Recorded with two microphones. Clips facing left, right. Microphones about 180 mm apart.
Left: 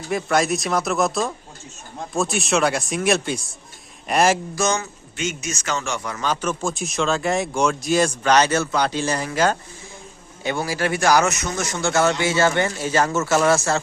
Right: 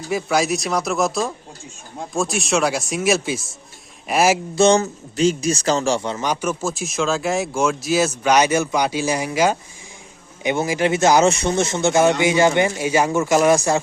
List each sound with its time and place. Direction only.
0.1 s speech: 5° right (ahead or behind)
4.5 s speech: 30° right (ahead or behind)
6.2 s speech: 10° right (ahead or behind)